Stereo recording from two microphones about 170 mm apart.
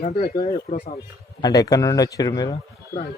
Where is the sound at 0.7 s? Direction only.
40° left (ahead or behind).